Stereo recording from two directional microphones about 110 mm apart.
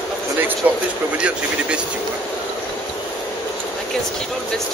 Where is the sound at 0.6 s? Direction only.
15° right (ahead or behind).